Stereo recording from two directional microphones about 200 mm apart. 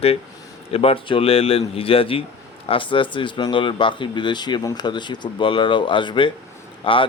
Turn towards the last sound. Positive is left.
turn(degrees=25)  # may be behind; listen again after turning